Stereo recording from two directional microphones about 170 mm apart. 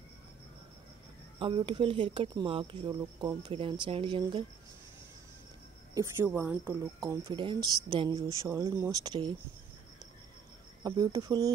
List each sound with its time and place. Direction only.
1.4 s speech: 30° right (ahead or behind)
5.9 s speech: 15° right (ahead or behind)
10.8 s speech: 25° right (ahead or behind)